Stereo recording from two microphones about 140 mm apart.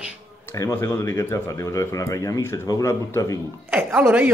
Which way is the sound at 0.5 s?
20° left (ahead or behind).